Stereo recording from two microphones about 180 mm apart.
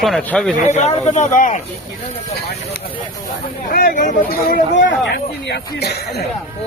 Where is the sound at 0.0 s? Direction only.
5° left (ahead or behind).